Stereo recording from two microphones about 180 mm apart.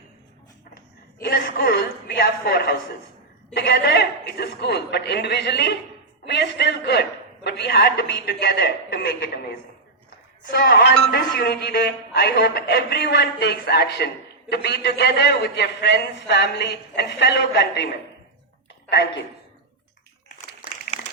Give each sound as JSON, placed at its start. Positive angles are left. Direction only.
{"t": 1.2, "sound": "a man's voice", "side_deg": 55}